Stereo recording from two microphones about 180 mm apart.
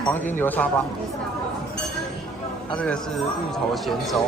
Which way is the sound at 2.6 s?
5° left (ahead or behind).